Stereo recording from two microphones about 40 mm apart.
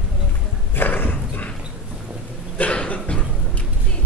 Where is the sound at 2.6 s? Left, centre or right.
Left.